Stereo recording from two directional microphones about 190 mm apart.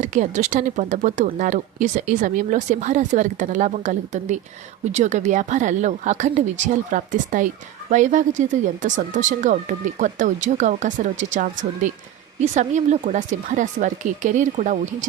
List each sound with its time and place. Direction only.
0.0 s speech: 40° right (ahead or behind)